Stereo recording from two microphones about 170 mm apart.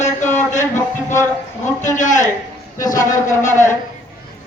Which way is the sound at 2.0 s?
50° left (ahead or behind).